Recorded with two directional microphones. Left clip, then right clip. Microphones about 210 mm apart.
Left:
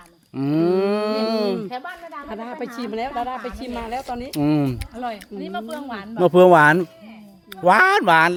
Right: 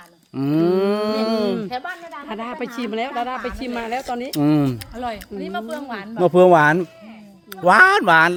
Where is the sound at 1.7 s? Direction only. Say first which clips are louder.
Right 3 dB; 10° right (ahead or behind).